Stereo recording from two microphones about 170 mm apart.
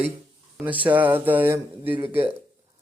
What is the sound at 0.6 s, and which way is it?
Speech, 10° right (ahead or behind).